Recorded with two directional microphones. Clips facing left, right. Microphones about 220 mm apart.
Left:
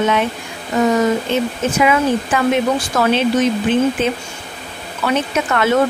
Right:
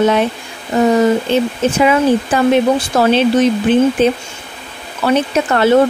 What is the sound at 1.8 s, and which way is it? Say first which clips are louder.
Speech: right 3 dB; 35° right (ahead or behind).